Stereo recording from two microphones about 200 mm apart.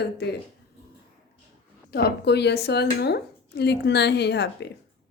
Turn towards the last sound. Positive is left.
turn(degrees=60)  # may be behind; listen again after turning